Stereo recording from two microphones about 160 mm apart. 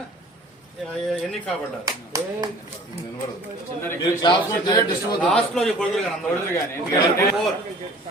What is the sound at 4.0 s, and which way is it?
Speech, 25° left (ahead or behind).